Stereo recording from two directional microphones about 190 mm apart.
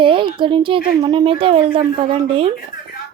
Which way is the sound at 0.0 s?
25° right (ahead or behind).